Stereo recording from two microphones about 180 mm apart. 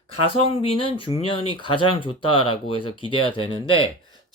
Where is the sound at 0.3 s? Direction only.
30° left (ahead or behind).